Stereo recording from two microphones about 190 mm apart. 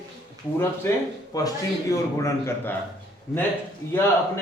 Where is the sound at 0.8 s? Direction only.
15° left (ahead or behind).